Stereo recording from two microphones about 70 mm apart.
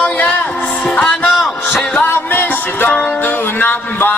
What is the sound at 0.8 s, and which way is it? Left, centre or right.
Music, centre.